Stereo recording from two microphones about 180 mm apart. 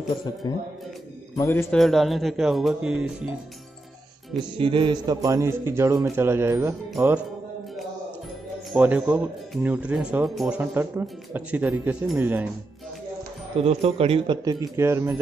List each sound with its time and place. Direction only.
0.4 s a man's voice: 20° left (ahead or behind)
1.8 s speech: centre (ahead or behind)
4.4 s speech: 25° right (ahead or behind)
8.7 s speech: 10° right (ahead or behind)
13.6 s a man's voice: 35° right (ahead or behind); by 15.1 s 15° right (ahead or behind)